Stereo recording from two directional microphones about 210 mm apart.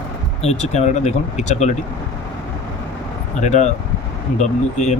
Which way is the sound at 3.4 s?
35° left (ahead or behind).